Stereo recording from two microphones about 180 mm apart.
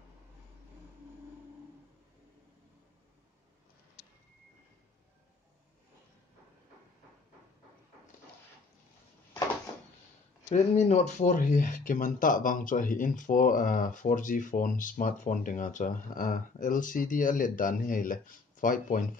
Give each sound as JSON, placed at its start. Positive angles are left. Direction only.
{"t": 10.5, "sound": "speech", "side_deg": 40}